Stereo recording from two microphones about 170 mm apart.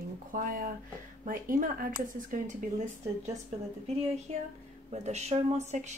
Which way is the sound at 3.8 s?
40° right (ahead or behind).